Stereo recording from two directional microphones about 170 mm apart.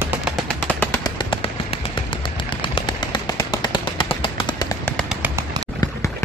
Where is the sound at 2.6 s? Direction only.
30° left (ahead or behind).